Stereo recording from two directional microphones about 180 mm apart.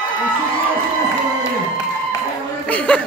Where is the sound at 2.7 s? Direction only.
5° left (ahead or behind).